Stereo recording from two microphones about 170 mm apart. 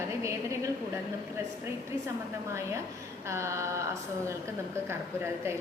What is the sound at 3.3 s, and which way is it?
Speech, 15° right (ahead or behind).